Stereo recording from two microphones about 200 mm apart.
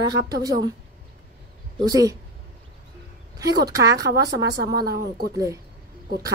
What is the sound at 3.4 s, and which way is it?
Speech, 15° right (ahead or behind).